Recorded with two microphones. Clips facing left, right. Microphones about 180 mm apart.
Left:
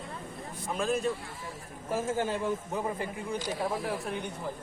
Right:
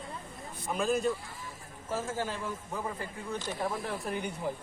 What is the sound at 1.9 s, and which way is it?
A man's voice, 20° left (ahead or behind).